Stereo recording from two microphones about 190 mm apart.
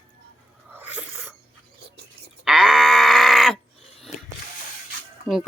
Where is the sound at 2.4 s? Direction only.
Centre (ahead or behind).